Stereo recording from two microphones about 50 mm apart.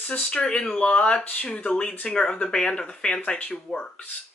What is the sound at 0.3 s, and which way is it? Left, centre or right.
Speech, left.